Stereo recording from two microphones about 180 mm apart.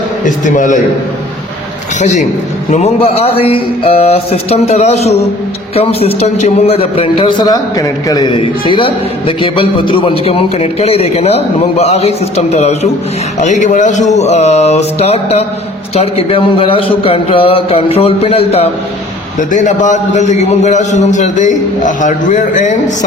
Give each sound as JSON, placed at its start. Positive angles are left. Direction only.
{"t": 0.3, "sound": "a man's voice", "side_deg": 45}
{"t": 2.0, "sound": "a man's voice", "side_deg": 40}
{"t": 19.4, "sound": "a man's voice", "side_deg": 45}